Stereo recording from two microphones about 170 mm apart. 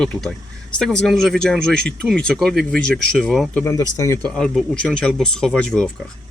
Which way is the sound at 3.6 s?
15° left (ahead or behind).